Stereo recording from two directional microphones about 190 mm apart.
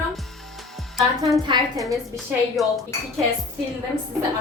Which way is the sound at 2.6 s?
Centre (ahead or behind).